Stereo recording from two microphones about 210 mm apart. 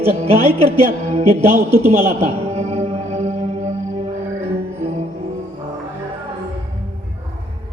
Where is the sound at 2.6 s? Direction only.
30° right (ahead or behind).